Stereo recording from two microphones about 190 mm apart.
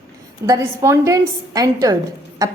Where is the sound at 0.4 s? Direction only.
15° right (ahead or behind).